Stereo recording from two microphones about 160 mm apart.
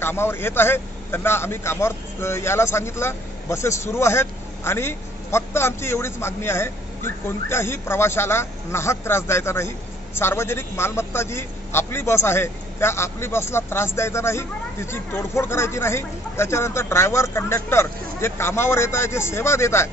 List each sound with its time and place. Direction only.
0.0 s speech: 15° left (ahead or behind)